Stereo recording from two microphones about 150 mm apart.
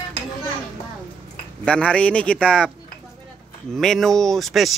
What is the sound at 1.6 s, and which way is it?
A man's voice, 5° left (ahead or behind).